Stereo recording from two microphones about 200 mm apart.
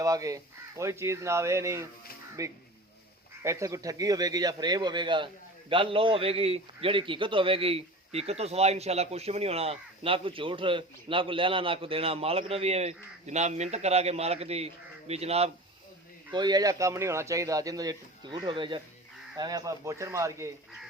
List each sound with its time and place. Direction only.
0.0 s a man's voice: 15° right (ahead or behind)
16.3 s speech: 20° right (ahead or behind)